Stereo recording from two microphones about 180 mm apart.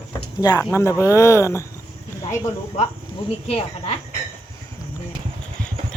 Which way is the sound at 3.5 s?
35° left (ahead or behind).